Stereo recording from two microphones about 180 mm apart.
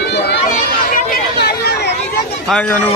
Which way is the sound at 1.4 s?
65° left (ahead or behind).